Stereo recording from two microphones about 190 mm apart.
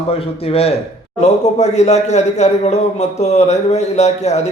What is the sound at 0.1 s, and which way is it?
A man's voice, 30° left (ahead or behind).